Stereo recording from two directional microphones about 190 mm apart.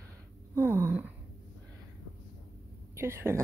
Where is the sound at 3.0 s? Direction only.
15° right (ahead or behind).